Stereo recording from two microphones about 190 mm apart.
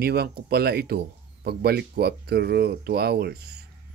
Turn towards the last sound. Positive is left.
turn(degrees=-55)  # may be behind; listen again after turning